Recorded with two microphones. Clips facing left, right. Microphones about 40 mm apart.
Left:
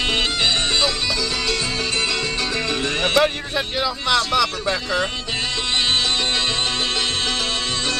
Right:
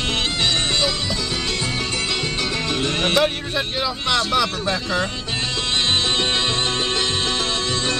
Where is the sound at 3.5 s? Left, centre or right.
Centre.